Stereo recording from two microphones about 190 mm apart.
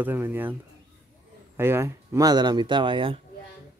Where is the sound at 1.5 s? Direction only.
10° right (ahead or behind).